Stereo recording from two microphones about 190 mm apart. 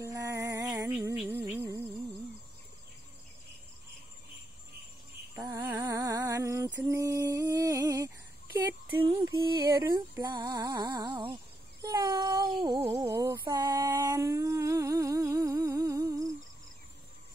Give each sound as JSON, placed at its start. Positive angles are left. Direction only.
{"t": 0.0, "sound": "music", "side_deg": -15}
{"t": 5.3, "sound": "music", "side_deg": -15}
{"t": 5.9, "sound": "a sound", "side_deg": -20}
{"t": 9.1, "sound": "music", "side_deg": -20}
{"t": 11.2, "sound": "a sound", "side_deg": -20}
{"t": 12.4, "sound": "music", "side_deg": -25}
{"t": 12.8, "sound": "humming", "side_deg": -20}